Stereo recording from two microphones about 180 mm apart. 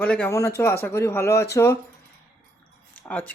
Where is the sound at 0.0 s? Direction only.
10° left (ahead or behind).